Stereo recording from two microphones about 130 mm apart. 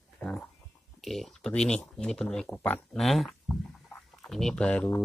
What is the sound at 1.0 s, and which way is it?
Speech, centre (ahead or behind).